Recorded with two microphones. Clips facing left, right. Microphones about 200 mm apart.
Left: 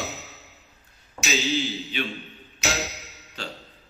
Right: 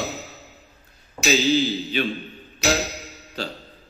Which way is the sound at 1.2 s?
35° right (ahead or behind).